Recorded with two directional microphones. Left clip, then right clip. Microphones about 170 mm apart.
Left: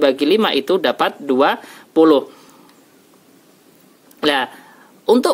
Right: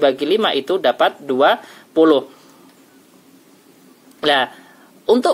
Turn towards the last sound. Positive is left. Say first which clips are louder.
# even
turn(degrees=35)  # may be behind; listen again after turning